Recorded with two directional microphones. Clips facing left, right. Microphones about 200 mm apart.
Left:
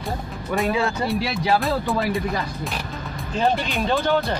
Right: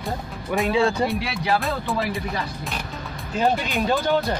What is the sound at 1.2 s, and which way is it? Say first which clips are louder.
Speech: left 2 dB; 30° left (ahead or behind).